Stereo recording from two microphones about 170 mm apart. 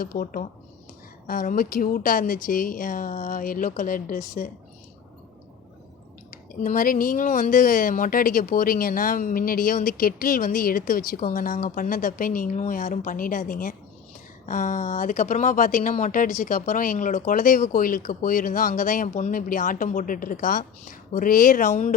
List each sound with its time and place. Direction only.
0.0 s speech: 55° left (ahead or behind)
6.3 s speech: 55° left (ahead or behind)